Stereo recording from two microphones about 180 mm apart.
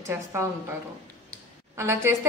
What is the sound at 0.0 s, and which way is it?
Speech, 15° right (ahead or behind).